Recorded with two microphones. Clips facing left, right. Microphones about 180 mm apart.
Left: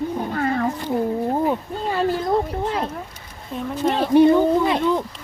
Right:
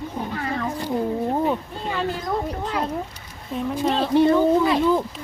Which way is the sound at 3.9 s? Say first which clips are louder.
Left 4 dB; 15° left (ahead or behind).